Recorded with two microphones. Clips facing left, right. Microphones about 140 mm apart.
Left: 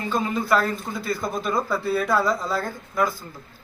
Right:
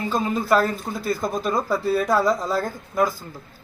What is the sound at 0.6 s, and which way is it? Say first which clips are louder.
Speech: right 2 dB; 45° right (ahead or behind).